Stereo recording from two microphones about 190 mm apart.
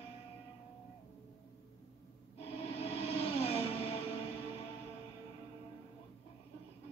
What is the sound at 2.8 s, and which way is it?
Music, 30° left (ahead or behind).